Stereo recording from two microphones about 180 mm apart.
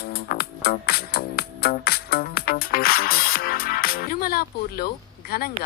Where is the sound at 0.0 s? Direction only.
60° left (ahead or behind).